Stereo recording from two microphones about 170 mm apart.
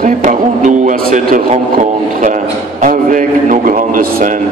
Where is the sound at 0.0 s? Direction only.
45° right (ahead or behind).